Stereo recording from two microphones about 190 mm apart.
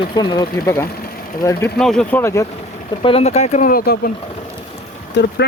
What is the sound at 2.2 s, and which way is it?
Speech, 15° left (ahead or behind).